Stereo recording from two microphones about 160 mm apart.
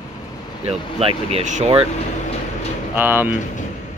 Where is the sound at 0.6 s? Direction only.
40° right (ahead or behind).